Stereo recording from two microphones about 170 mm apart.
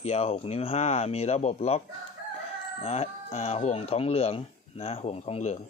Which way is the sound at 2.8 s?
35° left (ahead or behind).